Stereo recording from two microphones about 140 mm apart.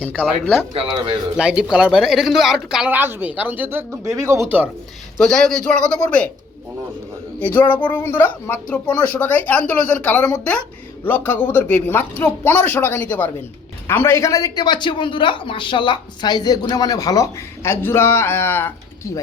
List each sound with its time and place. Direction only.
0.7 s speech: 40° right (ahead or behind)
1.4 s speech: 5° right (ahead or behind)
5.1 s speech: 5° left (ahead or behind)
7.3 s speech: 15° left (ahead or behind)